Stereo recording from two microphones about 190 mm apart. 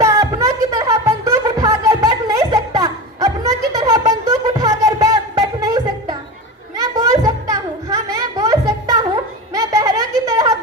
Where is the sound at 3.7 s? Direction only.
20° right (ahead or behind).